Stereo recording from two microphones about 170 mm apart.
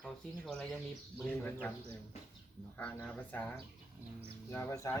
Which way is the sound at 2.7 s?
10° left (ahead or behind).